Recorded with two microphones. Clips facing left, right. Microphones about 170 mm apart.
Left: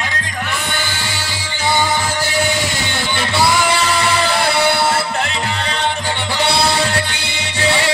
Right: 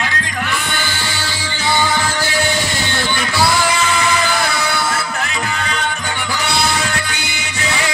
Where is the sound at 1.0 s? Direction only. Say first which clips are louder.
Right 2 dB; 20° left (ahead or behind).